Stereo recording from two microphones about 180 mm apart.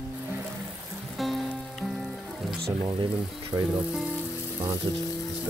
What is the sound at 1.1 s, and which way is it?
Music, centre (ahead or behind).